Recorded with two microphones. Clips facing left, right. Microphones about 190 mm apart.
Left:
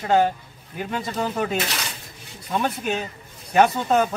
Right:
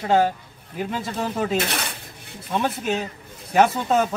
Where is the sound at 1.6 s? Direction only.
55° right (ahead or behind).